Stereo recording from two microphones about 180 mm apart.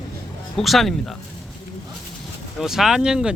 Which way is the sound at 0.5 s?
Centre (ahead or behind).